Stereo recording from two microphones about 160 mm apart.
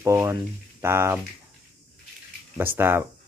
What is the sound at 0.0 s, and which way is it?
Speech, 15° right (ahead or behind).